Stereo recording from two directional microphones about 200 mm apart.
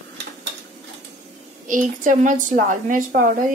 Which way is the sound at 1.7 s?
40° right (ahead or behind).